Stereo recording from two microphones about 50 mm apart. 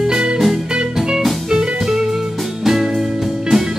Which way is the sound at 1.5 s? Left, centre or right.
Centre.